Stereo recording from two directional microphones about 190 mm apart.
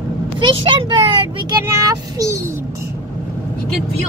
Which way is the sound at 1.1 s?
15° right (ahead or behind).